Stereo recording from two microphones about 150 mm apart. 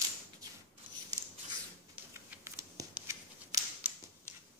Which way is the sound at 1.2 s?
15° right (ahead or behind).